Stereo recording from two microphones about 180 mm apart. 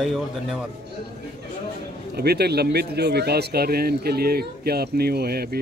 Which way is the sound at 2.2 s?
65° right (ahead or behind).